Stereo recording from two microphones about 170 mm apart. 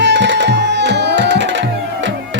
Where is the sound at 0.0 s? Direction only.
90° right.